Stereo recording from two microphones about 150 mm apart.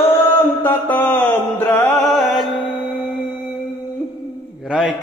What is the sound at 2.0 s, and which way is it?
Music, centre (ahead or behind).